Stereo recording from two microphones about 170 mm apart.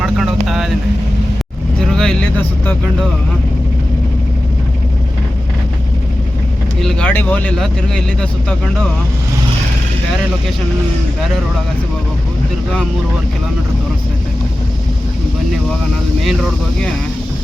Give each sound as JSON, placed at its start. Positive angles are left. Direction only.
{"t": 0.0, "sound": "vehicle", "side_deg": 0}
{"t": 1.9, "sound": "vehicle", "side_deg": 5}
{"t": 6.8, "sound": "speech", "side_deg": 10}
{"t": 16.2, "sound": "speech", "side_deg": 0}